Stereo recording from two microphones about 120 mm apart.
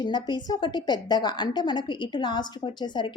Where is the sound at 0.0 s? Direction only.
40° left (ahead or behind).